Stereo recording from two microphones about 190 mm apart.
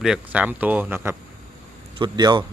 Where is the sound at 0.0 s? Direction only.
5° right (ahead or behind).